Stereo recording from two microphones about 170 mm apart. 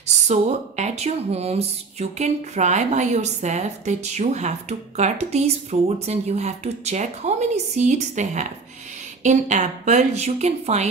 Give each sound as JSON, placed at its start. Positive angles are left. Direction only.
{"t": 0.0, "sound": "speech", "side_deg": -40}